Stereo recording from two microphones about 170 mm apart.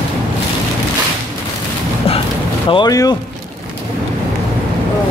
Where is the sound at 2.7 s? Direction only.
25° left (ahead or behind).